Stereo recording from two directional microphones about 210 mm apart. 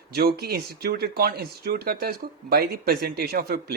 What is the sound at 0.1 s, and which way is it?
Speech, 50° right (ahead or behind).